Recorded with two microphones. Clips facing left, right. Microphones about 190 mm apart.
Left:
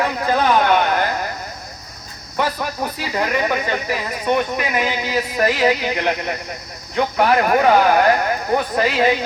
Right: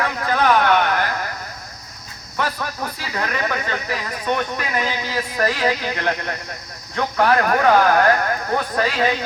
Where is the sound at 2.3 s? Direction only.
15° left (ahead or behind).